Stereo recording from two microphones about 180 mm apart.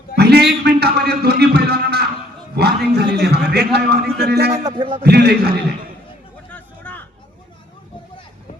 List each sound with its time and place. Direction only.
0.2 s music: 65° right (ahead or behind)
2.6 s a man's voice: 65° right (ahead or behind)
4.5 s speech: 25° right (ahead or behind)
5.0 s a man's voice: 65° right (ahead or behind)
6.5 s a sound: 10° left (ahead or behind)